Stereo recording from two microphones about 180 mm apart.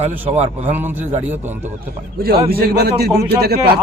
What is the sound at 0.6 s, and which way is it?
A man's voice, 10° right (ahead or behind).